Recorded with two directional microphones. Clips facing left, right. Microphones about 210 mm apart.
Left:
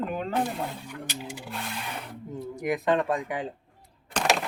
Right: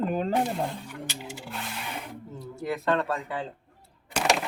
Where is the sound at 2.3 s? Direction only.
15° left (ahead or behind).